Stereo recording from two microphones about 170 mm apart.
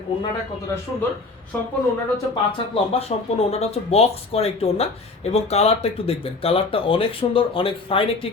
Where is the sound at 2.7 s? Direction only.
35° left (ahead or behind).